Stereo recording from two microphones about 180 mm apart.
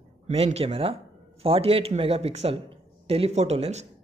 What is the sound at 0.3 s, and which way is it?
Speech, 35° right (ahead or behind).